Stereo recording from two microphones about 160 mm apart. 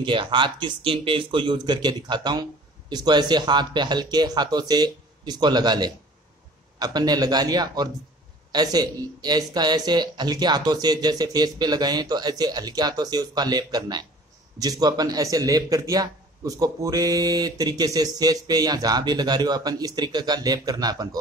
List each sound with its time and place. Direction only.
0.0 s speech: 30° right (ahead or behind)